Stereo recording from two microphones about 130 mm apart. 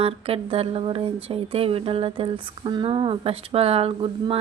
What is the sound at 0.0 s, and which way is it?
Speech, 45° right (ahead or behind).